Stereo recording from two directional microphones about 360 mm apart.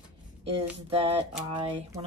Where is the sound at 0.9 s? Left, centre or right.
Centre.